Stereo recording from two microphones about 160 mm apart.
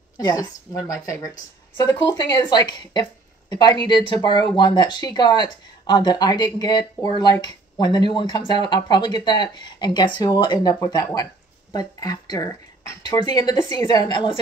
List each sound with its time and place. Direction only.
0.2 s speech: 20° left (ahead or behind)